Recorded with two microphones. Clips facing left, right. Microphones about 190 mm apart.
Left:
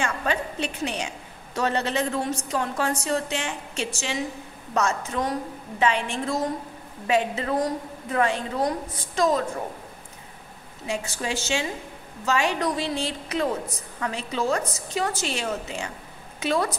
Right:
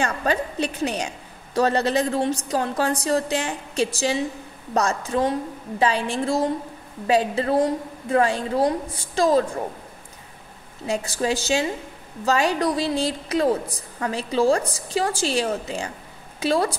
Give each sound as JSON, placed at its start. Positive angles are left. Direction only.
{"t": 0.0, "sound": "a woman's voice", "side_deg": -40}
{"t": 10.9, "sound": "a woman's voice", "side_deg": -40}